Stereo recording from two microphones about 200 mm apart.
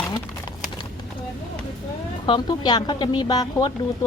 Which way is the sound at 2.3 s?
20° left (ahead or behind).